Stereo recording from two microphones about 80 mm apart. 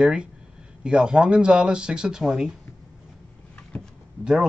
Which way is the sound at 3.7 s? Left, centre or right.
Centre.